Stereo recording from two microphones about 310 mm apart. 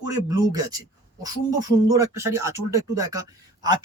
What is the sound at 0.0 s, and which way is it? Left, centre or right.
Speech, centre.